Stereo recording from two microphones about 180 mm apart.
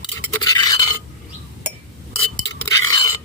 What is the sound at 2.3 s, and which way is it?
Scrape, 20° left (ahead or behind).